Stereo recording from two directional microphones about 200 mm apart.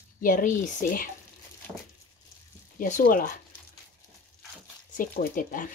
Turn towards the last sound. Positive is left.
turn(degrees=45)  # may be behind; listen again after turning